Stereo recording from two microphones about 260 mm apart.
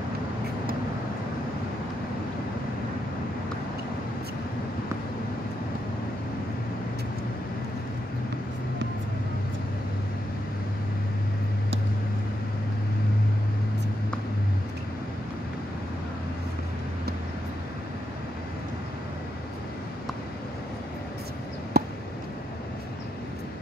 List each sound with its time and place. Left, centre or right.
21.7 s chop: right